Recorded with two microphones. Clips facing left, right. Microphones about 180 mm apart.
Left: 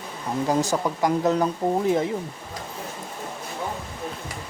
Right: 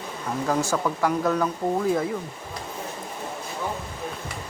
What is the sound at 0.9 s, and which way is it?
Speech, 20° left (ahead or behind).